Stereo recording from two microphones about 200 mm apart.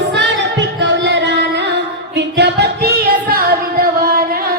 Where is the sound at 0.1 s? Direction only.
60° right (ahead or behind).